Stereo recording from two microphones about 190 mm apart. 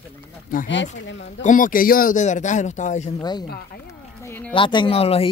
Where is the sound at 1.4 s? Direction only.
45° left (ahead or behind).